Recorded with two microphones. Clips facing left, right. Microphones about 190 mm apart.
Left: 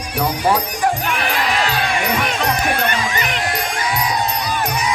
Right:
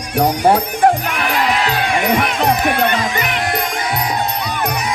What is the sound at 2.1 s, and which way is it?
Music, 60° right (ahead or behind).